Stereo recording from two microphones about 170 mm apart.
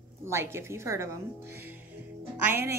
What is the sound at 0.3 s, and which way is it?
Speech, 15° right (ahead or behind).